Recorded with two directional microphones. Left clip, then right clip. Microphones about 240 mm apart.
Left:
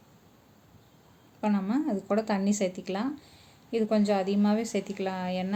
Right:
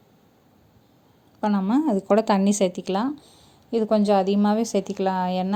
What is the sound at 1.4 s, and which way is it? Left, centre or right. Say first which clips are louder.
A woman's voice: right 6 dB; right.